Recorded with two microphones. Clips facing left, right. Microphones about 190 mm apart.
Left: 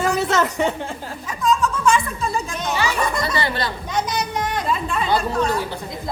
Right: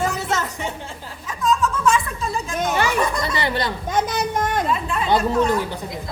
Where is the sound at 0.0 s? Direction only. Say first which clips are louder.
Left 4 dB; 70° left (ahead or behind).